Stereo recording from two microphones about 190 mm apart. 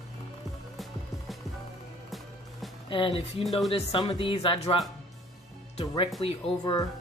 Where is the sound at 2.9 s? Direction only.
25° left (ahead or behind).